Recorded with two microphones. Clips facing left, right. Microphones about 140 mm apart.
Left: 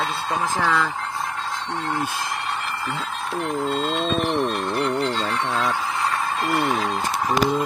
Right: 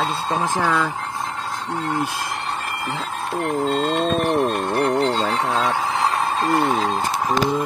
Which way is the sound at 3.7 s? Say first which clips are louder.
Right 3 dB; 55° right (ahead or behind).